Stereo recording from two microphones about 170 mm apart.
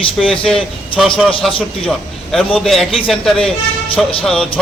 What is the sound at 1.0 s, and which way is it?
Speech, centre (ahead or behind).